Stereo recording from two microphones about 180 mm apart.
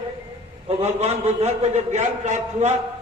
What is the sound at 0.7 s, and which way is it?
A man's voice, 35° right (ahead or behind).